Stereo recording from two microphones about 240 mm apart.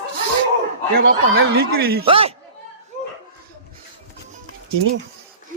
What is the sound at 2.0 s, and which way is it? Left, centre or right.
Speech, right.